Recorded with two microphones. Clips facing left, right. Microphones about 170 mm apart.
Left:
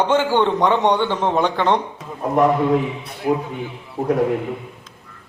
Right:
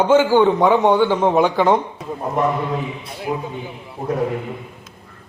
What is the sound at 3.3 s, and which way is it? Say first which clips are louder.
Speech: left 5 dB; 35° left (ahead or behind).